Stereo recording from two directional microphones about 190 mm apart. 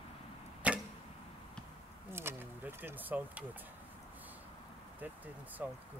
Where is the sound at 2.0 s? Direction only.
10° right (ahead or behind).